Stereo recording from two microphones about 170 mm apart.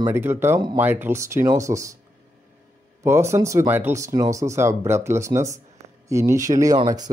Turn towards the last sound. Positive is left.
turn(degrees=-25)  # may be behind; listen again after turning